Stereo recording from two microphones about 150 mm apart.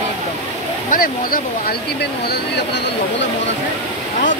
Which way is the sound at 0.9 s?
70° left (ahead or behind).